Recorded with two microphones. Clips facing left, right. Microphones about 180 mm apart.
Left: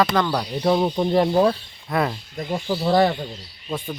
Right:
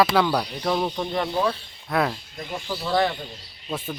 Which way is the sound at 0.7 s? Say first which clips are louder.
Left 7 dB; 25° left (ahead or behind).